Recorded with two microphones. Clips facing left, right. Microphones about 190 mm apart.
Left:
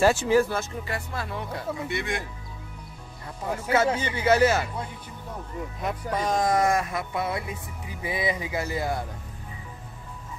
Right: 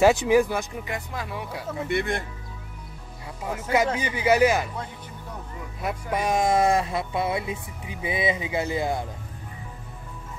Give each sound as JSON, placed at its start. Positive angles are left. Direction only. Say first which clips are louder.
{"t": 0.0, "sound": "speech", "louder": "right 2 dB", "side_deg": -15}
{"t": 1.9, "sound": "speech", "louder": "right 8 dB", "side_deg": -55}
{"t": 3.7, "sound": "speech", "louder": "even", "side_deg": -15}
{"t": 5.8, "sound": "speech", "louder": "right 2 dB", "side_deg": -10}
{"t": 6.4, "sound": "speech", "louder": "right 2 dB", "side_deg": -25}